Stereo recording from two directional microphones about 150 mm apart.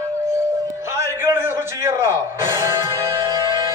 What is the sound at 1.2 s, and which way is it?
Music, 15° right (ahead or behind).